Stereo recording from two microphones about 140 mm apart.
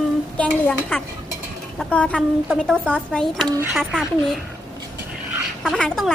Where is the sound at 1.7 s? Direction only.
5° left (ahead or behind).